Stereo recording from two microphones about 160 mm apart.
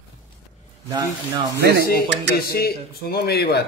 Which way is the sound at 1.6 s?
80° right.